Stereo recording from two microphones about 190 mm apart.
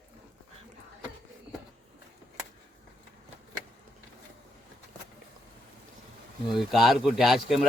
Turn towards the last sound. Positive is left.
turn(degrees=0)  # may be behind; listen again after turning